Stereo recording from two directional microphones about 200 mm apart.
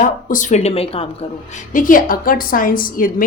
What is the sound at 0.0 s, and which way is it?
Speech, 40° left (ahead or behind).